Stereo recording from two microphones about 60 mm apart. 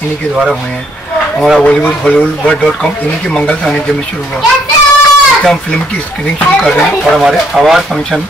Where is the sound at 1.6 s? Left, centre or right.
Centre.